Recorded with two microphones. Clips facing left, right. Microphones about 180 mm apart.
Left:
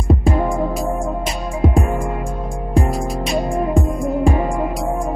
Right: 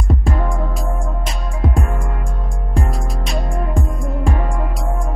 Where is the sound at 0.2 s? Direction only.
Centre (ahead or behind).